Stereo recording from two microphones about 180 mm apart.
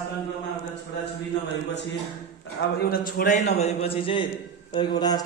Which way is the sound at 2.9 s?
50° left (ahead or behind).